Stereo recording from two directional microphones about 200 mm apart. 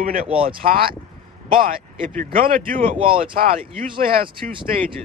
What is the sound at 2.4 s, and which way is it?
Speech, 45° right (ahead or behind).